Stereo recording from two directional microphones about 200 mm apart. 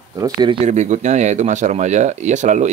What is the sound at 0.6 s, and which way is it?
Speech, 35° right (ahead or behind).